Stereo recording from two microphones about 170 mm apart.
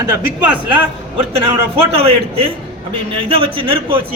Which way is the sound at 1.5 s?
35° right (ahead or behind).